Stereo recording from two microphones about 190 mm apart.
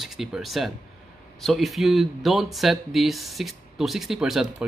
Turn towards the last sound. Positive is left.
turn(degrees=-5)  # may be behind; listen again after turning